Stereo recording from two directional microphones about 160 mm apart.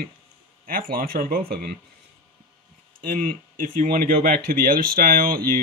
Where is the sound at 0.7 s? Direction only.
65° right (ahead or behind).